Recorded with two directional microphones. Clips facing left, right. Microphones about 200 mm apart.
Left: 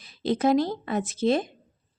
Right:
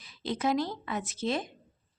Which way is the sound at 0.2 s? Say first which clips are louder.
Left 7 dB; 30° left (ahead or behind).